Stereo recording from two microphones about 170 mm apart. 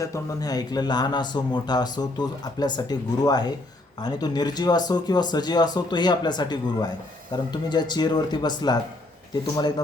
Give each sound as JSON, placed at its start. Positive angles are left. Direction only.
{"t": 0.0, "sound": "speech", "side_deg": 20}